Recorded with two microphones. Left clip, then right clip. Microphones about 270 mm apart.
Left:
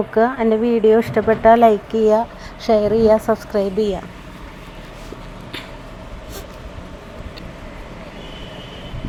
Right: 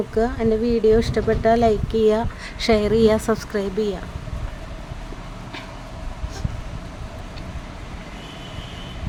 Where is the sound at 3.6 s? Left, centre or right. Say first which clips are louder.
Left 5 dB; centre.